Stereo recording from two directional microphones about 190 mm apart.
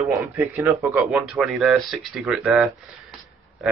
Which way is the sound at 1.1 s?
Centre (ahead or behind).